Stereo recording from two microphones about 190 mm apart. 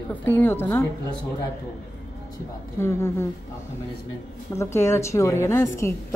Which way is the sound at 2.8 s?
15° left (ahead or behind).